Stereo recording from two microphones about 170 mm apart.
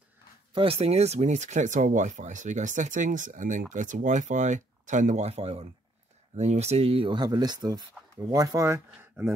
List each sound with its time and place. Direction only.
0.5 s speech: 35° right (ahead or behind)
8.9 s speech: 5° right (ahead or behind)